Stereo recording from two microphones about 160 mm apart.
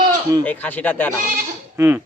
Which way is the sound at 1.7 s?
15° right (ahead or behind).